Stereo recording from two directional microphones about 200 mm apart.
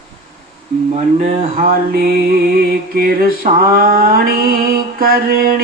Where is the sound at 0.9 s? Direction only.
35° right (ahead or behind).